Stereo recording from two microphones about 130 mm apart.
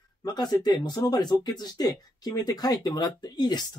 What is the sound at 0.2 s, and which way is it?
Speech, 30° left (ahead or behind).